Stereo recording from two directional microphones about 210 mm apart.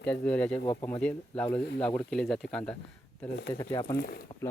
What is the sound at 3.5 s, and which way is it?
Speech, 15° left (ahead or behind).